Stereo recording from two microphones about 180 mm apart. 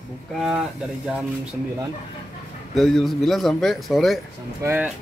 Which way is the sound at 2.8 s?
Centre (ahead or behind).